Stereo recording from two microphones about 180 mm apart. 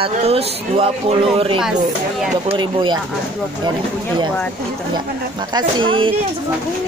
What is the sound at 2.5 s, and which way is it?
Speech, 25° right (ahead or behind).